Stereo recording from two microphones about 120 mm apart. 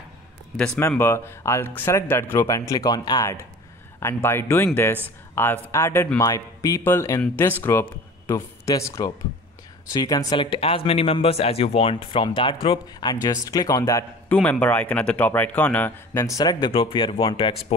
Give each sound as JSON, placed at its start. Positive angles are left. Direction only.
{"t": 0.7, "sound": "speech", "side_deg": 20}
{"t": 4.0, "sound": "speech", "side_deg": 20}
{"t": 14.3, "sound": "speech", "side_deg": 10}
{"t": 16.2, "sound": "speech", "side_deg": 30}
{"t": 16.7, "sound": "speech", "side_deg": 45}